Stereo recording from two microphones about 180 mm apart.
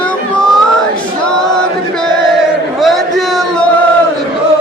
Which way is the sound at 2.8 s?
Centre (ahead or behind).